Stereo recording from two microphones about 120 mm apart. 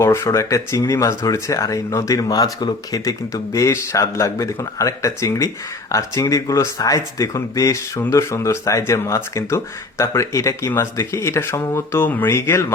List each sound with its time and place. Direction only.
0.0 s speech: 25° left (ahead or behind)